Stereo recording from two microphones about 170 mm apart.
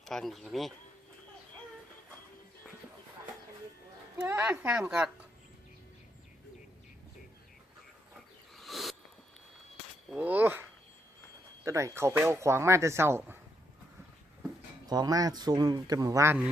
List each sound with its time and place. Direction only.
0.0 s speech: centre (ahead or behind)
4.2 s speech: 10° right (ahead or behind)
8.5 s a sound: centre (ahead or behind)
10.1 s speech: 10° right (ahead or behind)
14.8 s a man's voice: 25° right (ahead or behind)